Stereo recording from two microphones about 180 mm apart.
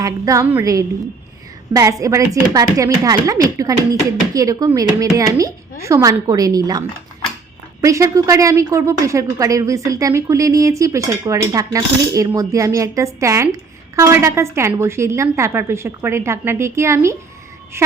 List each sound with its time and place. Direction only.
0.0 s a woman's voice: 15° right (ahead or behind)